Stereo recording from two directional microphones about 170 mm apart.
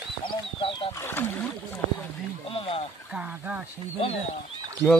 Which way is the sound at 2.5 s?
35° left (ahead or behind).